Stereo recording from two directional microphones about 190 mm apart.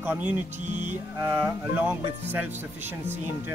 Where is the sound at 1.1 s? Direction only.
15° right (ahead or behind).